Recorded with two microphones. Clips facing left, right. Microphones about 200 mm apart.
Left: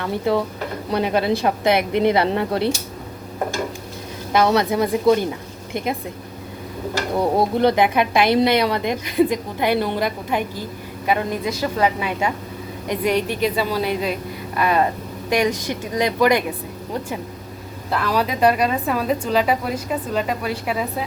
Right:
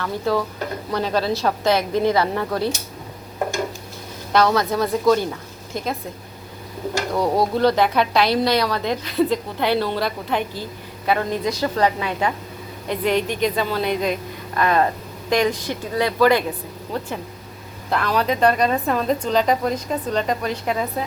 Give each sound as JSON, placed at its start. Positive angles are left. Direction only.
{"t": 0.0, "sound": "speech", "side_deg": 20}
{"t": 4.4, "sound": "speech", "side_deg": 20}
{"t": 7.1, "sound": "speech", "side_deg": 25}
{"t": 8.3, "sound": "a woman's voice", "side_deg": 55}
{"t": 8.5, "sound": "a woman's voice", "side_deg": 20}
{"t": 17.9, "sound": "a woman's voice", "side_deg": 5}